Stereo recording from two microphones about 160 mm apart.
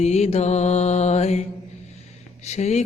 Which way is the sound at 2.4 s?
45° left (ahead or behind).